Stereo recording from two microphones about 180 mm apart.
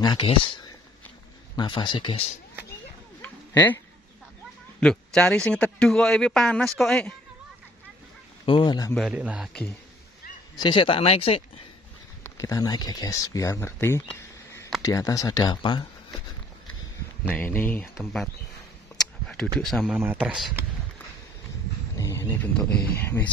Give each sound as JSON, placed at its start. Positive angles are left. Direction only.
{"t": 0.0, "sound": "speech", "side_deg": 25}
{"t": 3.2, "sound": "a sound", "side_deg": 10}
{"t": 4.7, "sound": "a man's voice", "side_deg": 5}
{"t": 8.5, "sound": "speech", "side_deg": 25}
{"t": 9.0, "sound": "speech", "side_deg": -5}
{"t": 10.5, "sound": "speech", "side_deg": 25}
{"t": 12.2, "sound": "speech", "side_deg": 20}
{"t": 17.3, "sound": "speech", "side_deg": 10}
{"t": 17.9, "sound": "a man's voice", "side_deg": 0}
{"t": 18.9, "sound": "computer keyboard", "side_deg": 5}
{"t": 19.6, "sound": "a man's voice", "side_deg": 0}
{"t": 21.9, "sound": "speech", "side_deg": 15}